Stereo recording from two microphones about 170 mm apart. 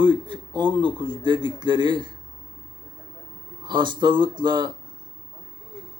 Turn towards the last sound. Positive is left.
turn(degrees=-25)  # may be behind; listen again after turning